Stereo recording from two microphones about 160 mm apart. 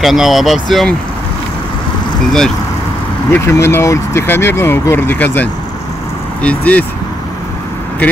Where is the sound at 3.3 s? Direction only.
15° left (ahead or behind).